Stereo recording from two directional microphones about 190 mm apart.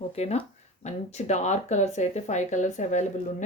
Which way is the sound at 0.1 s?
35° left (ahead or behind).